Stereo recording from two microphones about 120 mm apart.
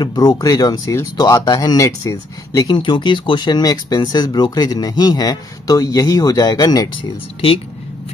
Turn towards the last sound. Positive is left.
turn(degrees=45)  # may be behind; listen again after turning